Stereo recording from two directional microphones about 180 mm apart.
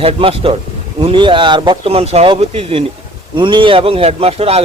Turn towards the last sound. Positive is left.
turn(degrees=-35)  # may be behind; listen again after turning